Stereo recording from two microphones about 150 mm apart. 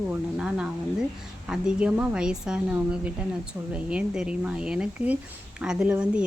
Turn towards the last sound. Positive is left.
turn(degrees=-5)  # may be behind; listen again after turning